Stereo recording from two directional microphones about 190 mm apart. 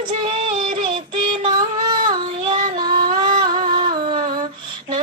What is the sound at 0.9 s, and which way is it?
Child singing, 25° right (ahead or behind).